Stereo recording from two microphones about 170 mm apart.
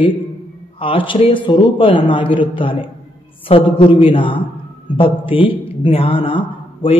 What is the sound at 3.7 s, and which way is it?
Mantra, 30° left (ahead or behind).